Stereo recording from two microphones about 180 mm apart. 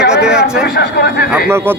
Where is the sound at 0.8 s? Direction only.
60° left (ahead or behind).